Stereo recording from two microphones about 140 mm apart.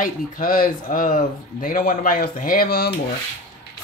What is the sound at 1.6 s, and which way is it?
Speech, 90° left.